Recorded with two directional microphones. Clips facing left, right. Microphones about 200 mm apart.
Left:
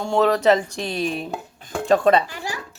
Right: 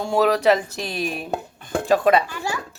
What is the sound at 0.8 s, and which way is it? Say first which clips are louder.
Speech: left 2 dB; 25° left (ahead or behind).